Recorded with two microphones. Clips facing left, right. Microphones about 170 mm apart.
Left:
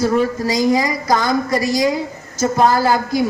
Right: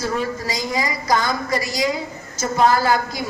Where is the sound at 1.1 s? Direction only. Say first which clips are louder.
Left 3 dB; 50° left (ahead or behind).